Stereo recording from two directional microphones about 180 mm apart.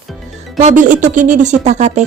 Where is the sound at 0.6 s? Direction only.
45° right (ahead or behind).